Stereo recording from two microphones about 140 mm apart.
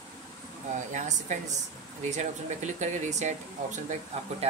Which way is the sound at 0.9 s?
55° right (ahead or behind).